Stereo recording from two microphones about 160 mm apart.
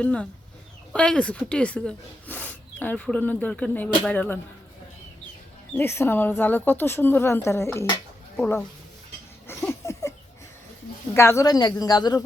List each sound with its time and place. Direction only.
0.0 s speech: 10° left (ahead or behind)
5.7 s speech: 15° left (ahead or behind)
9.5 s a sound: 15° left (ahead or behind)
11.1 s speech: 15° left (ahead or behind)